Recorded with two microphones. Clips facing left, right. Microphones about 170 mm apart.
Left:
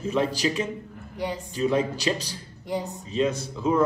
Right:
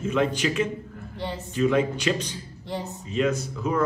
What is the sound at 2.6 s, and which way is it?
Speech, 15° left (ahead or behind).